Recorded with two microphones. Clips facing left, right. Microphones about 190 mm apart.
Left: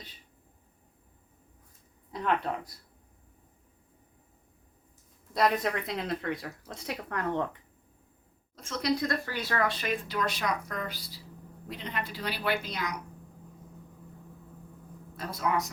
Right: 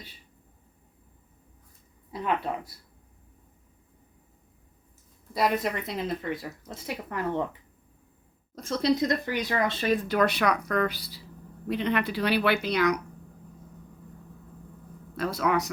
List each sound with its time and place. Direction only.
2.1 s speech: 5° right (ahead or behind)
5.3 s speech: centre (ahead or behind)
8.5 s a woman's voice: 35° right (ahead or behind)
9.0 s speech: 20° right (ahead or behind)
10.1 s a woman's voice: 60° right (ahead or behind)
15.1 s speech: 75° right (ahead or behind)